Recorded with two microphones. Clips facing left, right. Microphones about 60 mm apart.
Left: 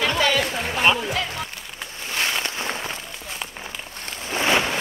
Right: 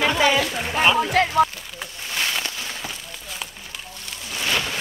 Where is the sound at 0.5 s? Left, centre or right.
Centre.